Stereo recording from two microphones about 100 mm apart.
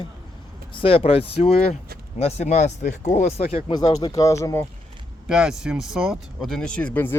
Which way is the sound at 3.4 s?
75° left (ahead or behind).